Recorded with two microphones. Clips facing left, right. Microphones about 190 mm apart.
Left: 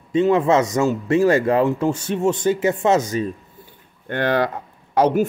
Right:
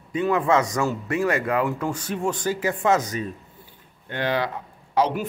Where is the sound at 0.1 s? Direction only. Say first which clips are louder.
Left 5 dB; 25° left (ahead or behind).